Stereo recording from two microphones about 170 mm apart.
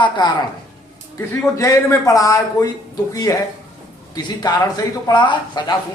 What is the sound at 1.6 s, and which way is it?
Speech, 20° left (ahead or behind).